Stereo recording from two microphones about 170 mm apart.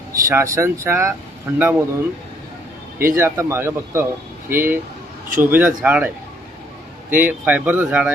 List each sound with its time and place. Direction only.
0.3 s speech: 15° right (ahead or behind)
7.1 s speech: 10° right (ahead or behind)